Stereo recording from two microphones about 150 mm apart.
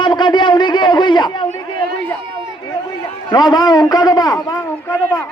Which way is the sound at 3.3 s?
25° left (ahead or behind).